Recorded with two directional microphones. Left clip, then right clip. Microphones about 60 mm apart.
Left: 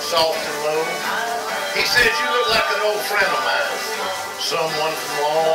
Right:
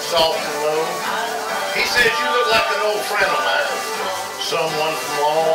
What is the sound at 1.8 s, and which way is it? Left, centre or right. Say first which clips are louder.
Speech: even; left.